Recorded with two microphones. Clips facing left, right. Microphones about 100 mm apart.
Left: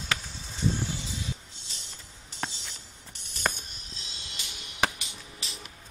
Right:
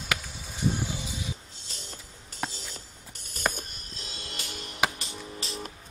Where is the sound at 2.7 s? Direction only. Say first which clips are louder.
Right 3 dB; 45° right (ahead or behind).